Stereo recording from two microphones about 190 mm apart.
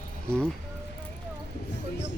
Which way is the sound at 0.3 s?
5° left (ahead or behind).